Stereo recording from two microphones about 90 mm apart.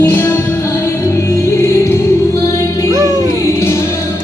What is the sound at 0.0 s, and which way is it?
Music, 25° left (ahead or behind).